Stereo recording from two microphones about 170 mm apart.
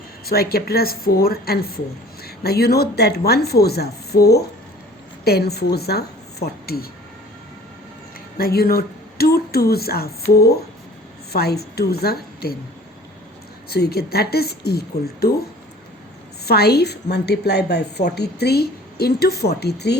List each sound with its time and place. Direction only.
0.3 s a woman's voice: 65° left (ahead or behind)
8.4 s a woman's voice: 60° left (ahead or behind)
13.7 s a woman's voice: 65° left (ahead or behind)
16.5 s a woman's voice: 70° left (ahead or behind)